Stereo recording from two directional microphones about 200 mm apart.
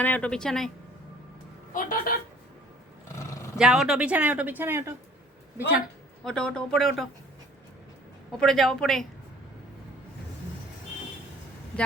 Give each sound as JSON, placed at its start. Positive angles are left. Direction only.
{"t": 0.0, "sound": "speech", "side_deg": 5}
{"t": 1.7, "sound": "a woman's voice", "side_deg": 45}
{"t": 3.2, "sound": "roar", "side_deg": 15}
{"t": 3.6, "sound": "speech", "side_deg": -5}
{"t": 6.2, "sound": "speech", "side_deg": 5}
{"t": 8.4, "sound": "speech", "side_deg": 0}
{"t": 11.7, "sound": "vehicle", "side_deg": 5}